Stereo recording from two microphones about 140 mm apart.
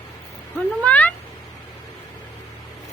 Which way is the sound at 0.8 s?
10° left (ahead or behind).